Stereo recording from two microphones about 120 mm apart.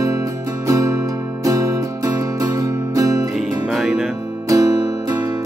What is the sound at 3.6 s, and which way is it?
Music, centre (ahead or behind).